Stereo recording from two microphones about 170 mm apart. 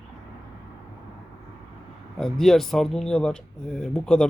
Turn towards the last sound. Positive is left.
turn(degrees=5)  # may be behind; listen again after turning